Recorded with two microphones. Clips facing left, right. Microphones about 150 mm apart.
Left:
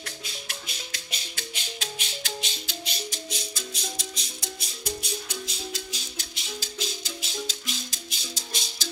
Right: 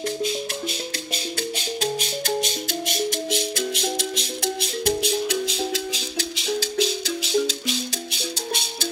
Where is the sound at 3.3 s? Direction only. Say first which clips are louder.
Right 12 dB; 70° right (ahead or behind).